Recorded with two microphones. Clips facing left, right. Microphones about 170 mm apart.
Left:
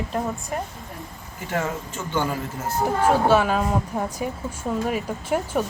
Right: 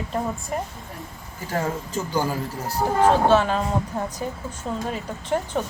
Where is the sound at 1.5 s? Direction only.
35° right (ahead or behind).